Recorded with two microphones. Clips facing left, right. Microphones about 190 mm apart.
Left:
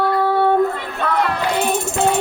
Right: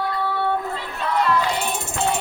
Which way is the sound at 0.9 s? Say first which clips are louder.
Even; 60° left (ahead or behind).